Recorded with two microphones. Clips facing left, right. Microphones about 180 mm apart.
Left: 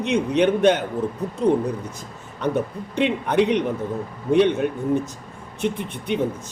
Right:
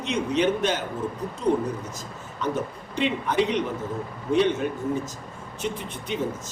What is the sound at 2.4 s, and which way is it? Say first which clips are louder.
A man's voice: left 5 dB; 60° left (ahead or behind).